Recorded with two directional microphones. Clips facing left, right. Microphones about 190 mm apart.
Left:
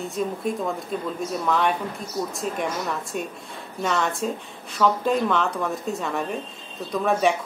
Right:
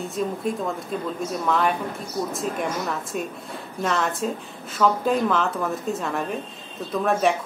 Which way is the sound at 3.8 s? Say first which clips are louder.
Even; centre (ahead or behind).